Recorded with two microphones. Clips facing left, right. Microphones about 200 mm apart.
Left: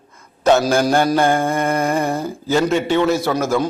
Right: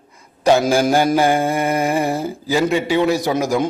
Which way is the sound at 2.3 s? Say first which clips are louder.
Left 1 dB; 5° right (ahead or behind).